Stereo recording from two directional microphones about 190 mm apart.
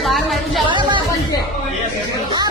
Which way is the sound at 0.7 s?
25° right (ahead or behind).